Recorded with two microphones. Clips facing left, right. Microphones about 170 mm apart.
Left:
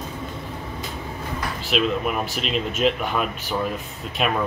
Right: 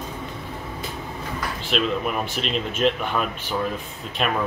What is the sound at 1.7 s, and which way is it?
Speech, 5° left (ahead or behind).